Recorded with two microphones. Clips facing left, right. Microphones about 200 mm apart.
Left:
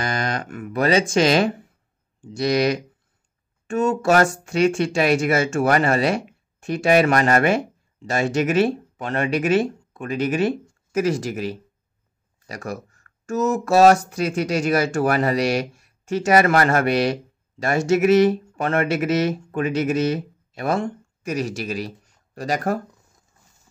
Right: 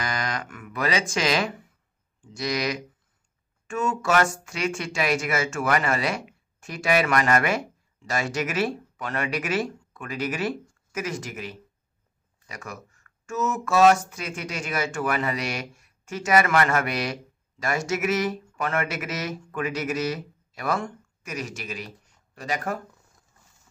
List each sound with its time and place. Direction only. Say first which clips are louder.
0.0 s music: left 5 dB; 30° left (ahead or behind)
2.2 s speech: left 8 dB; 30° left (ahead or behind)